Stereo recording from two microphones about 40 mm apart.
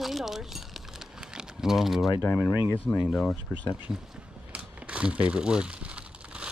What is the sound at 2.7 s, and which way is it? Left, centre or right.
Speech, left.